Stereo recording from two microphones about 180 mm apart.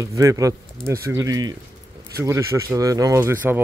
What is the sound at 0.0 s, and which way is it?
Speech, 20° right (ahead or behind).